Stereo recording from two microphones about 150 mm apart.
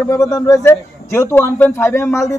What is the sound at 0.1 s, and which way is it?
Speech, 20° left (ahead or behind).